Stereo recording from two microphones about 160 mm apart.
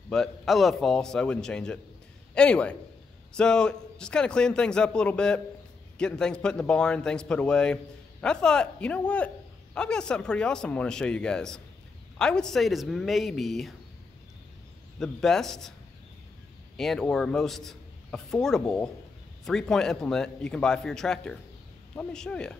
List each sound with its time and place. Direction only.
0.1 s a man's voice: centre (ahead or behind)
15.0 s a man's voice: 5° left (ahead or behind)
16.7 s a man's voice: centre (ahead or behind)